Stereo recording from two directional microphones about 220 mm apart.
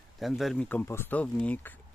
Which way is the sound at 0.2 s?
Centre (ahead or behind).